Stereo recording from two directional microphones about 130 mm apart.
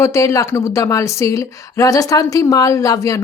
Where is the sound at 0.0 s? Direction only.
25° left (ahead or behind).